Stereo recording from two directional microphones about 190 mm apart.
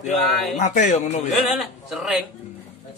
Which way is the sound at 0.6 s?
40° left (ahead or behind).